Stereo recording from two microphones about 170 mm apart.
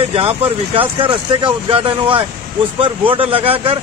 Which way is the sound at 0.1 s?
30° right (ahead or behind).